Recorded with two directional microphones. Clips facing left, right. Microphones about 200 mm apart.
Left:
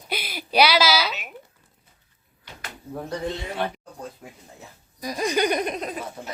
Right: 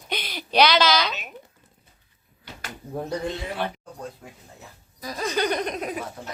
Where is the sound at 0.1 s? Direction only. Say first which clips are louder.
Even; 10° left (ahead or behind).